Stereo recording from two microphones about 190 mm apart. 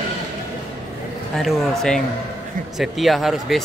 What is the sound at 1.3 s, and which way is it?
Speech, centre (ahead or behind).